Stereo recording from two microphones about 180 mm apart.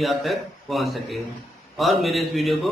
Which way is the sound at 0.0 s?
Centre (ahead or behind).